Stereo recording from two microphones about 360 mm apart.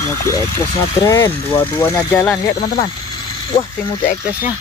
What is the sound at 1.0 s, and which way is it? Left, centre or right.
Speech, centre.